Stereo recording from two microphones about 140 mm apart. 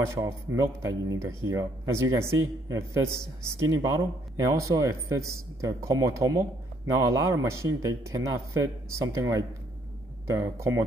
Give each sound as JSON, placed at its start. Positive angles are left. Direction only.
{"t": 0.1, "sound": "speech", "side_deg": -20}